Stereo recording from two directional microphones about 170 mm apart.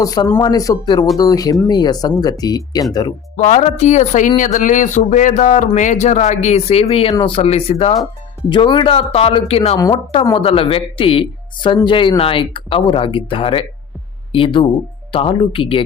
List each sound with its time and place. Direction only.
0.0 s speech: 20° left (ahead or behind)
3.3 s speech: 40° left (ahead or behind)